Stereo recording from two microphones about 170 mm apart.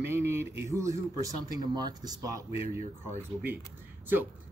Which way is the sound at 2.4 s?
35° left (ahead or behind).